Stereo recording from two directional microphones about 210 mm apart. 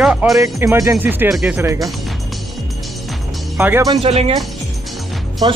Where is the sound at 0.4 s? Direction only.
15° right (ahead or behind).